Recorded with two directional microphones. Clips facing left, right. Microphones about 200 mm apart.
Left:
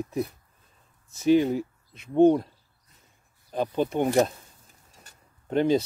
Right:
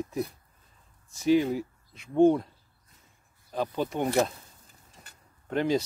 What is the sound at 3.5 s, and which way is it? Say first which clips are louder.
Speech: left 4 dB; 15° left (ahead or behind).